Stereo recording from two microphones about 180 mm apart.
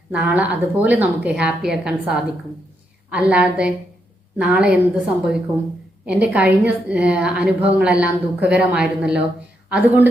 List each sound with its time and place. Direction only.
0.1 s a woman's voice: 5° right (ahead or behind)